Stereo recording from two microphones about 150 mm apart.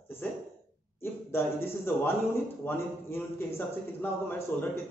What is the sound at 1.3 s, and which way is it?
A man's voice, 15° left (ahead or behind).